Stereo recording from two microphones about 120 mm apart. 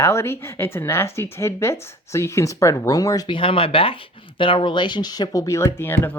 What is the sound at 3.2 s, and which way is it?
Speech, 45° left (ahead or behind).